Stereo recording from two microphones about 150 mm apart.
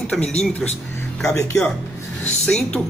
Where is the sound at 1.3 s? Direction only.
15° left (ahead or behind).